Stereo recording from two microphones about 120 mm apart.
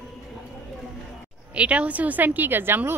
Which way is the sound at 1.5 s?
10° right (ahead or behind).